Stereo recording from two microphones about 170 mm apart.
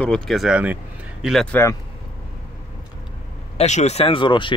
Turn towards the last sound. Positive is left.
turn(degrees=30)  # may be behind; listen again after turning